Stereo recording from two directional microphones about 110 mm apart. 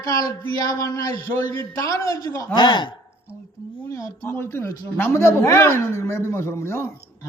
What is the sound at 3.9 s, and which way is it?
Speech, 25° left (ahead or behind).